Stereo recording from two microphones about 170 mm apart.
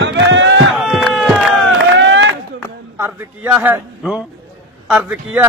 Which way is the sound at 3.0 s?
10° right (ahead or behind).